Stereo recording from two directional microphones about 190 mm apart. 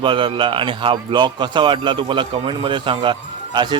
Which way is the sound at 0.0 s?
25° right (ahead or behind).